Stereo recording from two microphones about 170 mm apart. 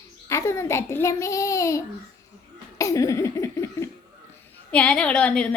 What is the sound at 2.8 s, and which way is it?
Laughter, 20° left (ahead or behind).